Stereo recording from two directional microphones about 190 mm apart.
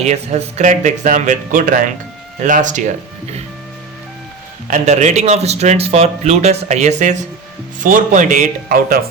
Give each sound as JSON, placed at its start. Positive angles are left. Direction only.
{"t": 0.0, "sound": "speech", "side_deg": -35}
{"t": 4.7, "sound": "speech", "side_deg": -40}